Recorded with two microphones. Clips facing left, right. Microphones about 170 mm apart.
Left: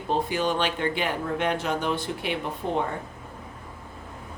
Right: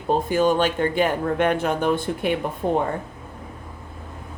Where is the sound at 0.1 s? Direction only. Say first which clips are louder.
Right 6 dB; 45° right (ahead or behind).